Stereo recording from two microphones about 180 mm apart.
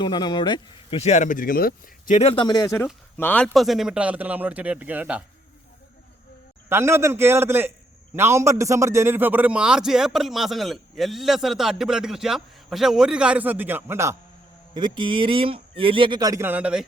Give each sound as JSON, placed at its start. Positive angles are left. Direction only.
{"t": 0.0, "sound": "speech", "side_deg": 25}
{"t": 2.1, "sound": "speech", "side_deg": 30}
{"t": 3.2, "sound": "speech", "side_deg": 10}
{"t": 6.7, "sound": "a man's voice", "side_deg": -15}
{"t": 14.7, "sound": "speech", "side_deg": -25}